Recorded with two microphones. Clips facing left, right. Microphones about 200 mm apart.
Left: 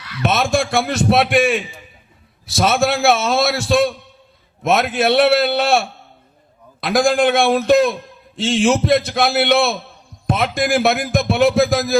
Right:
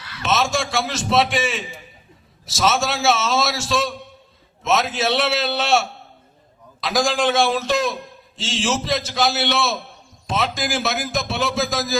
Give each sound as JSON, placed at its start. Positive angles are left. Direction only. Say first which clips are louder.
{"t": 0.2, "sound": "a man's voice", "louder": "left 4 dB", "side_deg": 55}